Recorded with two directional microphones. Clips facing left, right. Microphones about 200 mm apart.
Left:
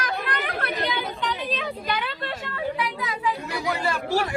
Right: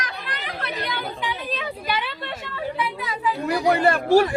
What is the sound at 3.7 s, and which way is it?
Speech, 60° right (ahead or behind).